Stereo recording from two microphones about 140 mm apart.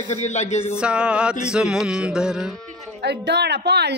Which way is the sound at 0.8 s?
5° right (ahead or behind).